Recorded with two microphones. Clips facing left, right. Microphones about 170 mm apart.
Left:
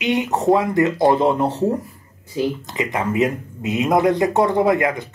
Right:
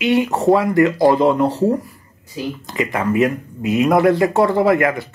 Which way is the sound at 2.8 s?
20° left (ahead or behind).